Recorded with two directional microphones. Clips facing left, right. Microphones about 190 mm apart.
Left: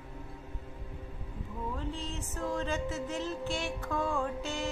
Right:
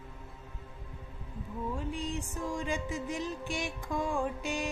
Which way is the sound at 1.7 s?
15° right (ahead or behind).